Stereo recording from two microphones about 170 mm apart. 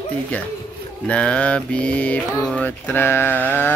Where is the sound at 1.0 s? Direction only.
5° left (ahead or behind).